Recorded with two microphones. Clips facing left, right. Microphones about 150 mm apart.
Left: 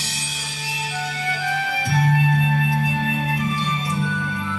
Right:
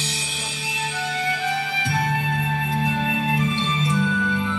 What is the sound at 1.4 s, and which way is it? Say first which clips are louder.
Music: left 1 dB; 20° right (ahead or behind).